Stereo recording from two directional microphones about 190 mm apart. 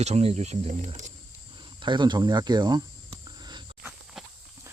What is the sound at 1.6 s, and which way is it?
Cricket, 25° right (ahead or behind).